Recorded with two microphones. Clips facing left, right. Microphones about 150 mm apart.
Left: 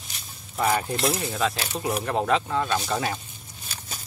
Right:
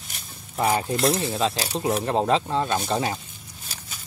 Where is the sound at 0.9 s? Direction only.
Centre (ahead or behind).